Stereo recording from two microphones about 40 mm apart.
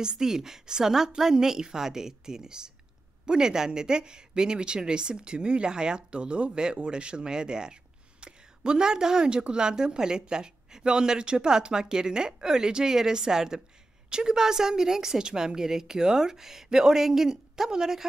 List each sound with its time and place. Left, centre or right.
0.0 s a woman's voice: centre